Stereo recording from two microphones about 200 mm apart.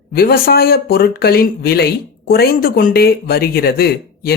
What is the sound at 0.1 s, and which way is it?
Speech, 50° left (ahead or behind).